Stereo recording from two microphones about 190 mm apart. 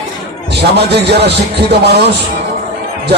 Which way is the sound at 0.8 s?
60° right (ahead or behind).